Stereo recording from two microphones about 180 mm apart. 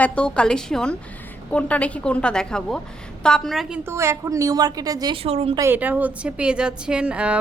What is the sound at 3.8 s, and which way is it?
A woman's voice, 15° right (ahead or behind).